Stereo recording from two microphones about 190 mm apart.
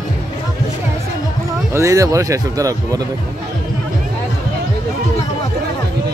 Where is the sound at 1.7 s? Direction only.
15° right (ahead or behind).